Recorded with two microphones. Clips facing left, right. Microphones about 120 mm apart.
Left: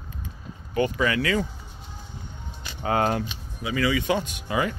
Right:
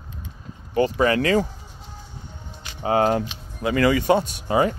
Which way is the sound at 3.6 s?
55° right (ahead or behind).